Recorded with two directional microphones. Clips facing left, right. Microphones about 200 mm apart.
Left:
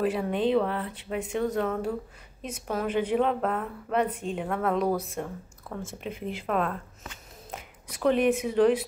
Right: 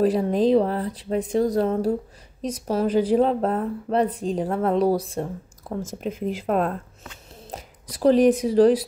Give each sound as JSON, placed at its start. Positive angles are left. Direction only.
{"t": 0.0, "sound": "a woman's voice", "side_deg": -35}